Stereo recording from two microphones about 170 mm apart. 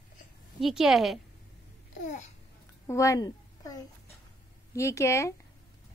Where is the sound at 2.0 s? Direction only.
45° left (ahead or behind).